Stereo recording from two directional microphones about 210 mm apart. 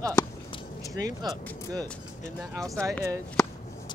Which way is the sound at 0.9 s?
20° right (ahead or behind).